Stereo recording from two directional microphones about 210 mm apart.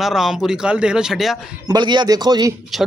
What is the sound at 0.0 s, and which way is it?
Speech, centre (ahead or behind).